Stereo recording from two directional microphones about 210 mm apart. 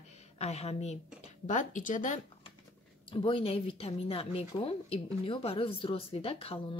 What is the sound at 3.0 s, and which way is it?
Speech, 25° left (ahead or behind).